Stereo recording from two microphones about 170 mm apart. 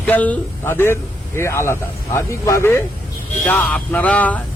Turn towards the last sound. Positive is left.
turn(degrees=10)  # may be behind; listen again after turning